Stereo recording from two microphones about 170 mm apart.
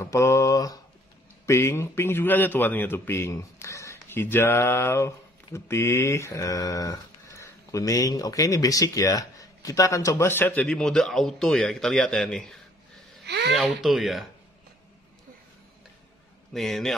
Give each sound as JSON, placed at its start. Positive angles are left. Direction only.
{"t": 0.0, "sound": "a man's voice", "side_deg": 15}
{"t": 13.2, "sound": "a sound", "side_deg": -85}
{"t": 13.6, "sound": "speech", "side_deg": 0}
{"t": 16.5, "sound": "speech", "side_deg": 0}